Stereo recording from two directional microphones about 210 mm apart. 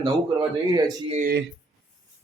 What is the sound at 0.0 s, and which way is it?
A man's voice, 20° right (ahead or behind).